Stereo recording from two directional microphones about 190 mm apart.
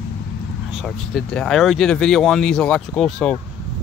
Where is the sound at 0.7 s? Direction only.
5° left (ahead or behind).